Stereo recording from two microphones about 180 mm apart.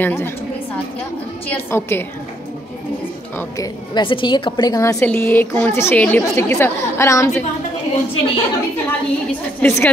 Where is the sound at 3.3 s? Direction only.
20° left (ahead or behind).